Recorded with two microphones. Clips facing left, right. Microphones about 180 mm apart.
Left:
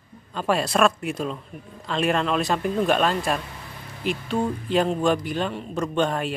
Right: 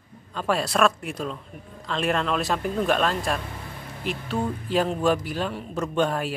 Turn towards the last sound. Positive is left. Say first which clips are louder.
# left 1 dB
turn(degrees=-5)  # may be behind; listen again after turning